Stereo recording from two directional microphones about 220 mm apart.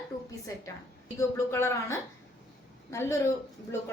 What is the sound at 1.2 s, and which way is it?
A woman's voice, 10° left (ahead or behind).